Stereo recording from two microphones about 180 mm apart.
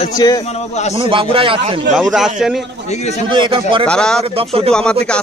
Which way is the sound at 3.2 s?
25° right (ahead or behind).